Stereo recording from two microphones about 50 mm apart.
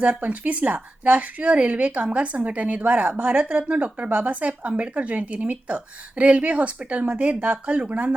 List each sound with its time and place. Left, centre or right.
0.0 s a woman's voice: right